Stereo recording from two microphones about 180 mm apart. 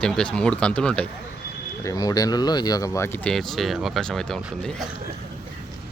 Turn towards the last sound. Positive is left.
turn(degrees=5)  # may be behind; listen again after turning